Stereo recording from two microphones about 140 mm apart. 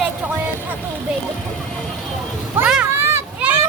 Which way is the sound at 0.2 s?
10° right (ahead or behind).